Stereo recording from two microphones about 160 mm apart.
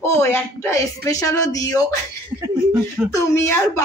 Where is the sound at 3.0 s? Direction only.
5° right (ahead or behind).